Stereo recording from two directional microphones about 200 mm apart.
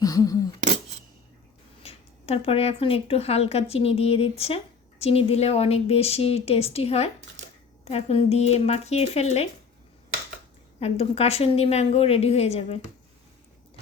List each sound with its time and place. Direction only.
0.0 s a sound: 15° left (ahead or behind)
1.8 s speech: 30° left (ahead or behind)
10.8 s speech: 30° left (ahead or behind)